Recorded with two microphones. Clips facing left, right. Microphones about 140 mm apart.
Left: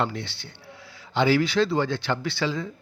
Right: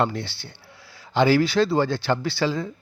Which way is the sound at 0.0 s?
40° right (ahead or behind).